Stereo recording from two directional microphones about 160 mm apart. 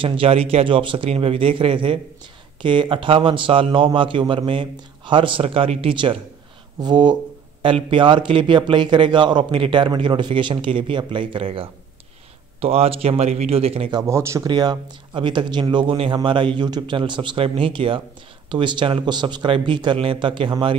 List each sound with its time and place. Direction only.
0.0 s a man's voice: 35° right (ahead or behind)
13.9 s a man's voice: 15° right (ahead or behind)